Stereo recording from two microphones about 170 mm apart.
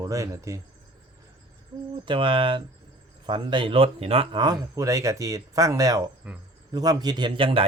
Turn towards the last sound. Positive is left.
turn(degrees=-30)  # may be behind; listen again after turning